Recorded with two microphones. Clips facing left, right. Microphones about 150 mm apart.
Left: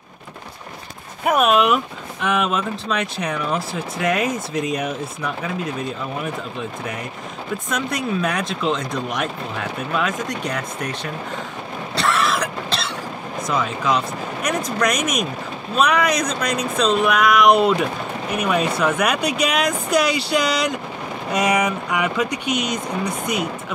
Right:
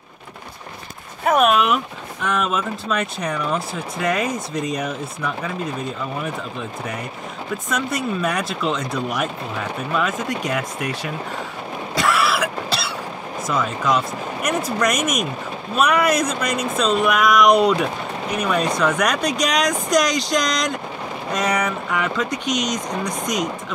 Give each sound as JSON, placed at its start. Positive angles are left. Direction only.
{"t": 1.3, "sound": "speech", "side_deg": 0}
{"t": 7.7, "sound": "speech", "side_deg": 0}
{"t": 12.0, "sound": "cough", "side_deg": -10}
{"t": 13.5, "sound": "speech", "side_deg": 0}
{"t": 15.0, "sound": "speech", "side_deg": -50}
{"t": 15.7, "sound": "speech", "side_deg": -5}